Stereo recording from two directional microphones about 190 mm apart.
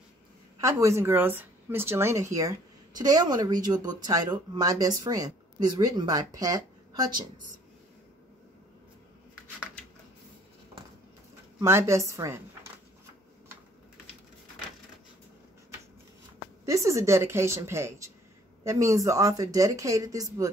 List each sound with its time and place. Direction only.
0.6 s a woman's voice: 15° right (ahead or behind)
11.6 s speech: 15° right (ahead or behind)
16.6 s speech: 15° right (ahead or behind)